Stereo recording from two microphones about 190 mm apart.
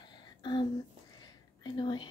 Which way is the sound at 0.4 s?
25° left (ahead or behind).